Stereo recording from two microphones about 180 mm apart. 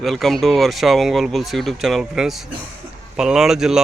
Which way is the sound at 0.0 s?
Centre (ahead or behind).